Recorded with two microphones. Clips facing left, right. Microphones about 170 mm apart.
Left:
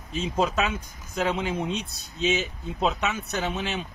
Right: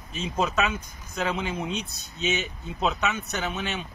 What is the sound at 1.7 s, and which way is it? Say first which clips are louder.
Speech: left 1 dB; 30° left (ahead or behind).